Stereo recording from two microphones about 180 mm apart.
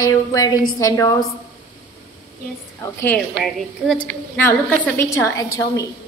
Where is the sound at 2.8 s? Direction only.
10° left (ahead or behind).